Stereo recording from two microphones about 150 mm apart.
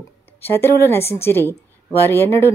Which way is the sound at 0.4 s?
15° left (ahead or behind).